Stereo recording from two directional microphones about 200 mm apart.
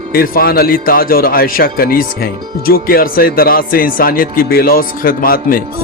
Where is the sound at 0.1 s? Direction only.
50° left (ahead or behind).